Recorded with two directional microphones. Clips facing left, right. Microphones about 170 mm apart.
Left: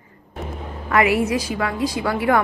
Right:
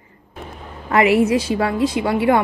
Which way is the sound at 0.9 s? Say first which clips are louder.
Right 4 dB; 25° right (ahead or behind).